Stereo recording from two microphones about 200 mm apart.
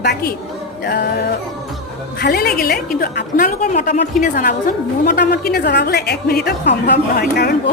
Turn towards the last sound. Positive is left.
turn(degrees=50)  # may be behind; listen again after turning